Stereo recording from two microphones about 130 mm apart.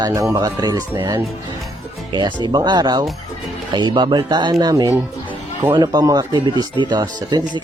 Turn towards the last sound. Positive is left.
turn(degrees=-35)  # may be behind; listen again after turning